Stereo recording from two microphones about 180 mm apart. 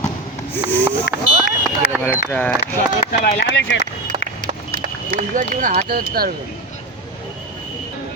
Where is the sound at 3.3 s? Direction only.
90° left.